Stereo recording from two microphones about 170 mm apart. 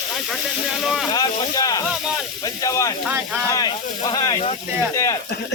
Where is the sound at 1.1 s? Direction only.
20° left (ahead or behind).